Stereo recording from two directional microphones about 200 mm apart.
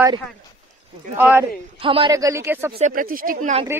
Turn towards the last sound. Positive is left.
turn(degrees=-45)  # may be behind; listen again after turning